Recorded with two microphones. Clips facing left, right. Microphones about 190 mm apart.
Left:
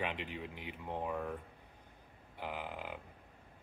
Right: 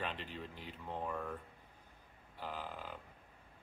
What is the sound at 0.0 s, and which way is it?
Speech, 15° left (ahead or behind).